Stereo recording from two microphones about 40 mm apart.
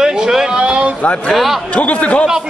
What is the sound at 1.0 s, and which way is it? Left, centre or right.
A man's voice, left.